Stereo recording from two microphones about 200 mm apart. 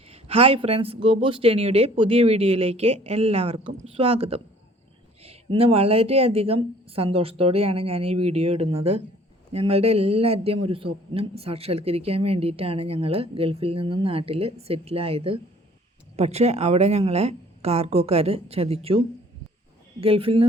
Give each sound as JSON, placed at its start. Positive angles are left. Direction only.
{"t": 0.1, "sound": "a man's voice", "side_deg": -30}